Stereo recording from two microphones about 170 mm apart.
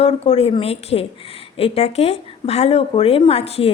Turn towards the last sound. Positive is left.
turn(degrees=35)  # may be behind; listen again after turning